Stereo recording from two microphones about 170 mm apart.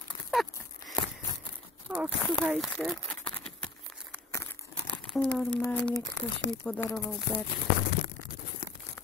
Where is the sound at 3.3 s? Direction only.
5° left (ahead or behind).